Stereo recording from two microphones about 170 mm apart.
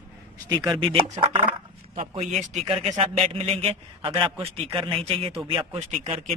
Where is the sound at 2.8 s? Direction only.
40° right (ahead or behind).